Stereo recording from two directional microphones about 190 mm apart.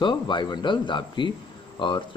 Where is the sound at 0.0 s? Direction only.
25° left (ahead or behind).